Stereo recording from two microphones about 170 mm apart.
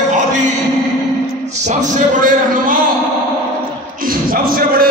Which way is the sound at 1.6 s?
45° right (ahead or behind).